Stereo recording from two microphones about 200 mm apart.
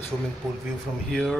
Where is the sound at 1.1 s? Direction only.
Centre (ahead or behind).